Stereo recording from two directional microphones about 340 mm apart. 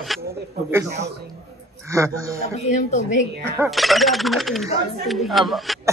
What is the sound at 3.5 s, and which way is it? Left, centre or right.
Speech, centre.